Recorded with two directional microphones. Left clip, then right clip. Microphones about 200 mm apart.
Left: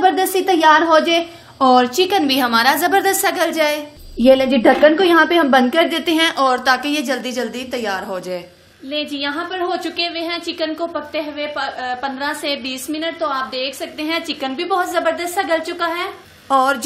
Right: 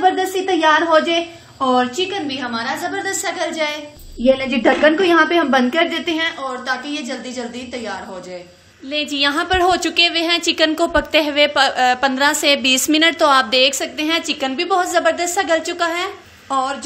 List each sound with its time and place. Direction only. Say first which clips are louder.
0.0 s a woman's voice: left 1 dB; 40° left (ahead or behind)
4.2 s a woman's voice: left 4 dB; 45° left (ahead or behind)
4.5 s a woman's voice: left 2 dB; 30° left (ahead or behind)
9.2 s a woman's voice: right 6 dB; 30° right (ahead or behind); by 16.1 s 10° right (ahead or behind)
16.4 s speech: left 5 dB; 20° left (ahead or behind)